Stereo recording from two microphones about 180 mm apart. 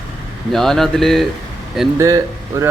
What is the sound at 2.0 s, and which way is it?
Speech, 15° right (ahead or behind).